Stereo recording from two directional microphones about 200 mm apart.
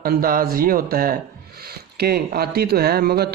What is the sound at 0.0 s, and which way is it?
A man's voice, 45° right (ahead or behind).